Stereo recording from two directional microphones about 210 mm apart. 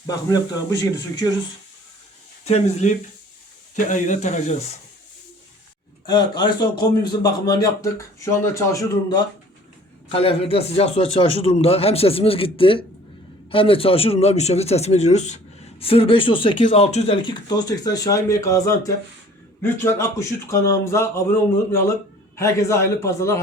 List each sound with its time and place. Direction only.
0.3 s a man's voice: 20° left (ahead or behind)
2.4 s speech: 30° left (ahead or behind)
6.1 s a man's voice: 20° left (ahead or behind)